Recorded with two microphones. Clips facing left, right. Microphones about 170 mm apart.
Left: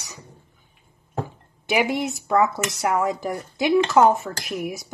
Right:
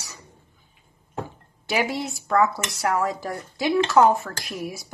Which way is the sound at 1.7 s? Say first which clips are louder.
Left 3 dB; 20° left (ahead or behind).